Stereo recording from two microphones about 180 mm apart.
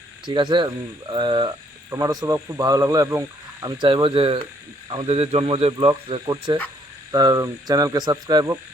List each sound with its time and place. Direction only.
0.3 s speech: 25° right (ahead or behind)